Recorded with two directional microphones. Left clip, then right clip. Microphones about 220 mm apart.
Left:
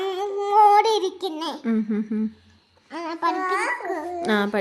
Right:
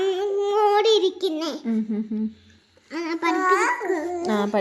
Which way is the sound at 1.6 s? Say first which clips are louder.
Left 2 dB; 35° left (ahead or behind).